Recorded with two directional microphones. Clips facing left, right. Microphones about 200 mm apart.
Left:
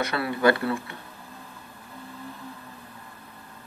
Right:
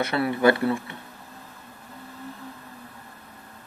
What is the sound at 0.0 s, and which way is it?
Speech, 25° right (ahead or behind).